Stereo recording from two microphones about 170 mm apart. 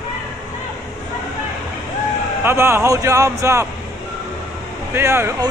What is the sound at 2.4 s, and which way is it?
Speech, 15° right (ahead or behind).